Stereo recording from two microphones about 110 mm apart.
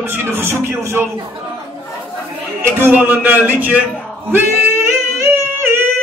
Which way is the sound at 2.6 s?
20° right (ahead or behind).